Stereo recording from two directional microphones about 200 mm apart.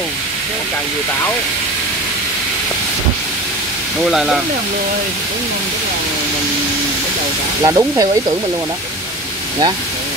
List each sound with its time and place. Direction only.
4.0 s speech: centre (ahead or behind)
7.6 s speech: 15° right (ahead or behind)